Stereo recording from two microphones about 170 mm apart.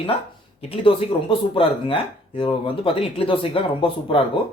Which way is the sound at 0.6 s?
35° left (ahead or behind).